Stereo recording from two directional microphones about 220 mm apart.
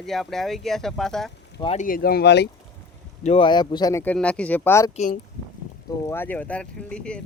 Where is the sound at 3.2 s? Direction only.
25° left (ahead or behind).